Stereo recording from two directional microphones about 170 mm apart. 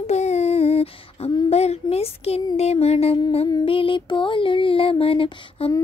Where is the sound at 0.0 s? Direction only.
40° left (ahead or behind).